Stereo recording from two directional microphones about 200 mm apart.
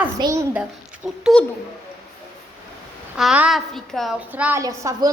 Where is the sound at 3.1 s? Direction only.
5° right (ahead or behind).